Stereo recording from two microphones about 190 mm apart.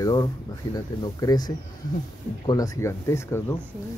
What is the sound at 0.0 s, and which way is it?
Speech, 20° left (ahead or behind).